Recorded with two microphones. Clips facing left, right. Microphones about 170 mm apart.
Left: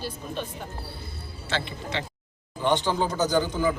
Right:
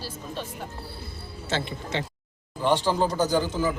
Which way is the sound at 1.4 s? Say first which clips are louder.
Right 1 dB; 45° right (ahead or behind).